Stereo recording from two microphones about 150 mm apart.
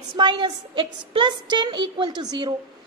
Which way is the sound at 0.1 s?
30° right (ahead or behind).